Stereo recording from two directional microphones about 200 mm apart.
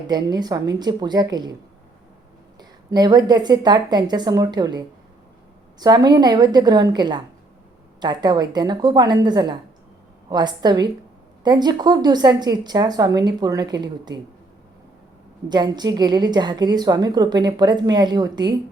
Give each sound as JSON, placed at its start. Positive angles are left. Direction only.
{"t": 0.1, "sound": "a woman's voice", "side_deg": -20}
{"t": 2.6, "sound": "a woman's voice", "side_deg": -20}
{"t": 15.4, "sound": "a woman's voice", "side_deg": -20}